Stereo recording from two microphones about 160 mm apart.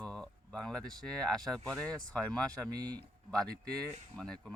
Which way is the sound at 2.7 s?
25° right (ahead or behind).